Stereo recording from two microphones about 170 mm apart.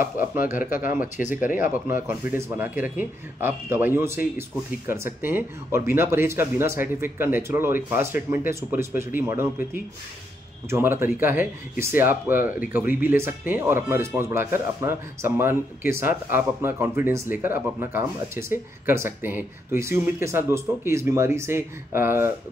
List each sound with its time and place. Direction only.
0.2 s speech: 55° left (ahead or behind)
2.0 s speech: 15° right (ahead or behind)
10.7 s speech: 15° right (ahead or behind)